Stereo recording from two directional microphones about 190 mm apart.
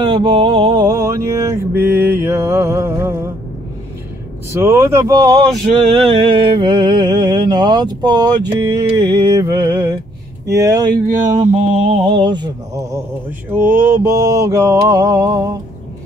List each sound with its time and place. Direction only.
0.0 s mantra: 25° right (ahead or behind)
4.5 s mantra: 15° right (ahead or behind)
6.1 s speech: 25° right (ahead or behind)
10.4 s mantra: 15° right (ahead or behind)
11.2 s speech: 40° right (ahead or behind); by 13.0 s 20° right (ahead or behind)
13.5 s mantra: 10° right (ahead or behind)